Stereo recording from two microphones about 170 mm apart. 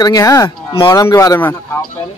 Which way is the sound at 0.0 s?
20° left (ahead or behind).